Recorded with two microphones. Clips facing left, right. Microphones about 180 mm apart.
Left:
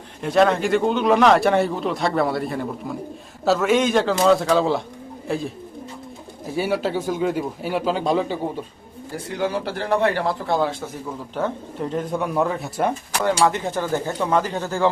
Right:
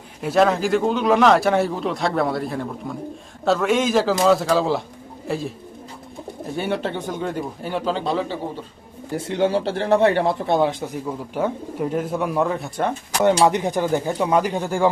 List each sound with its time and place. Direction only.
0.2 s speech: centre (ahead or behind)
6.6 s speech: 5° left (ahead or behind)
9.1 s speech: 25° right (ahead or behind); by 12.9 s 5° left (ahead or behind)
13.1 s speech: 15° right (ahead or behind)